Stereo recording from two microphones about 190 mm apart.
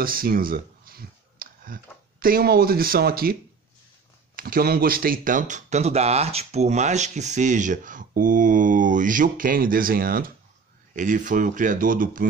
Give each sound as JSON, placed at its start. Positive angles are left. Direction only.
{"t": 0.0, "sound": "speech", "side_deg": -50}
{"t": 4.4, "sound": "speech", "side_deg": -50}